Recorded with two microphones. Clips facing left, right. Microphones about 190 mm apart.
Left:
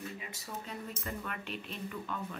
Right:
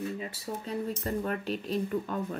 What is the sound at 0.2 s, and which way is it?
Speech, 35° right (ahead or behind).